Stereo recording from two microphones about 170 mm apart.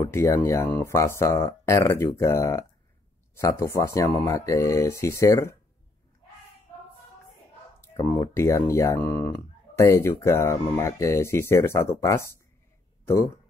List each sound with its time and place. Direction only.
0.1 s speech: 15° left (ahead or behind)
7.8 s speech: 15° left (ahead or behind)